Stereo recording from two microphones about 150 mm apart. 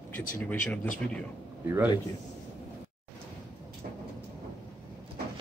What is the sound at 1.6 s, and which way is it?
Speech, 15° right (ahead or behind).